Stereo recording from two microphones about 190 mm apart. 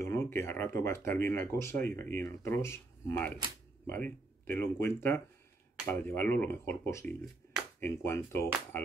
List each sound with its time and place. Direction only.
0.0 s speech: 15° left (ahead or behind)